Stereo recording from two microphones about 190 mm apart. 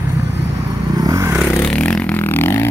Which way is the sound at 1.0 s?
15° right (ahead or behind).